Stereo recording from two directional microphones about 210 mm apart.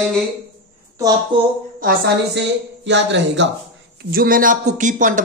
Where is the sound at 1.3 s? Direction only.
20° right (ahead or behind).